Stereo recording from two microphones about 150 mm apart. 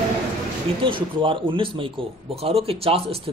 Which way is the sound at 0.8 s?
35° right (ahead or behind).